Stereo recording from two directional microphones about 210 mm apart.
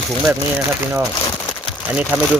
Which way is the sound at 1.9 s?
5° right (ahead or behind).